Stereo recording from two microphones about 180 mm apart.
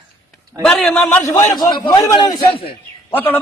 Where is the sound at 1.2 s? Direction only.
20° left (ahead or behind).